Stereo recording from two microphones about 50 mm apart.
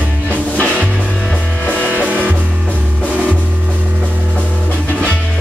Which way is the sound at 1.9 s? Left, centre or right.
Right.